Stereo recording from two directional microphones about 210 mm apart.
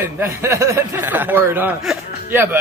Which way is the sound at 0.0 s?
10° right (ahead or behind).